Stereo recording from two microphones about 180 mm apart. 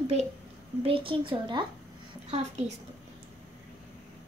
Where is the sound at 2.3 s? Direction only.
35° right (ahead or behind).